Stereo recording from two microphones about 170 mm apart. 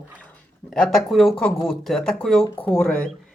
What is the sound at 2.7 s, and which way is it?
Speech, 5° left (ahead or behind).